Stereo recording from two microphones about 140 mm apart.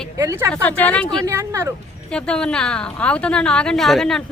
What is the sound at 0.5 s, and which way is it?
Speech, 10° left (ahead or behind).